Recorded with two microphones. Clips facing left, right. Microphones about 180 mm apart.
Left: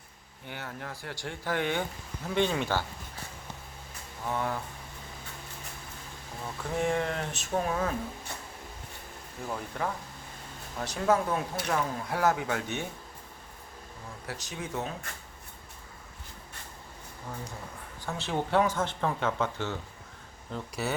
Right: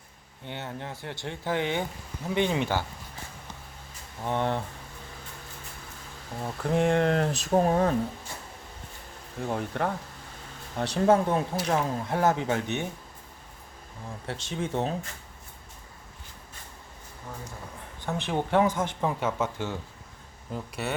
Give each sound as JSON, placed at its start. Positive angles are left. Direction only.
{"t": 0.4, "sound": "speech", "side_deg": -25}
{"t": 4.3, "sound": "speech", "side_deg": -30}
{"t": 6.4, "sound": "speech", "side_deg": -35}
{"t": 9.6, "sound": "speech", "side_deg": -55}
{"t": 10.8, "sound": "speech", "side_deg": -30}
{"t": 14.3, "sound": "speech", "side_deg": -25}
{"t": 18.0, "sound": "speech", "side_deg": -15}
{"t": 20.5, "sound": "speech", "side_deg": 0}